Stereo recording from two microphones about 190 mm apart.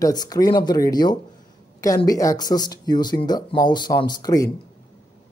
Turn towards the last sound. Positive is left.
turn(degrees=20)  # may be behind; listen again after turning